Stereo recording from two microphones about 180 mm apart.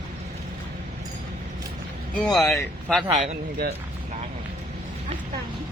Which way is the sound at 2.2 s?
Centre (ahead or behind).